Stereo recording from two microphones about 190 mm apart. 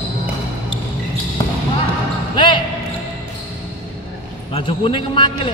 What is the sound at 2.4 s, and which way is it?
Basketball bounce, 25° left (ahead or behind).